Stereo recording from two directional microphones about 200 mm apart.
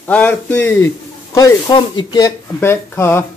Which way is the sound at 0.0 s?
10° left (ahead or behind).